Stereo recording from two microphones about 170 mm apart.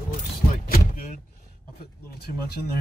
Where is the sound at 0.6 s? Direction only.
60° left (ahead or behind).